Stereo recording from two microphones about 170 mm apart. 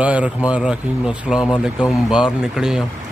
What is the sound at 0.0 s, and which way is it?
Speech, 10° right (ahead or behind).